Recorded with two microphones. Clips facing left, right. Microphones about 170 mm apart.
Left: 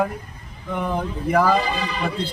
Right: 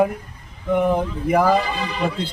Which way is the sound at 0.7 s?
15° right (ahead or behind).